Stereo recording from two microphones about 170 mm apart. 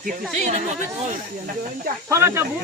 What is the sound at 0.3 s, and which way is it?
Speech, 45° right (ahead or behind).